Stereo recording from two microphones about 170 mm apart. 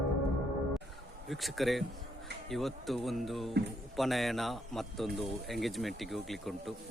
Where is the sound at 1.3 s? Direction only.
Centre (ahead or behind).